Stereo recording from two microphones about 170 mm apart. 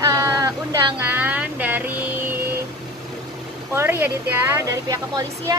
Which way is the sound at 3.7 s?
15° right (ahead or behind).